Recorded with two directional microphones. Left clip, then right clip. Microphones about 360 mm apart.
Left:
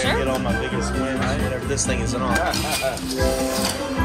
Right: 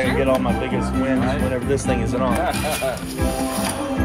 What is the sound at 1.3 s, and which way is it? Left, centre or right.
Speech, centre.